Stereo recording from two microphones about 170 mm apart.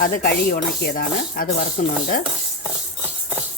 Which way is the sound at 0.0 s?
60° left (ahead or behind).